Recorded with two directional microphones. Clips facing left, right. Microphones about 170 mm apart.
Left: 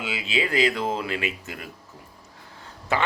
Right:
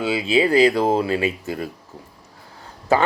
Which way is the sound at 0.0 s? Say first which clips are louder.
Right 9 dB; 35° right (ahead or behind).